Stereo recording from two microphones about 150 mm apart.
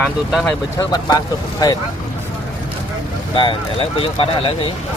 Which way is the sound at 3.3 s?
35° left (ahead or behind).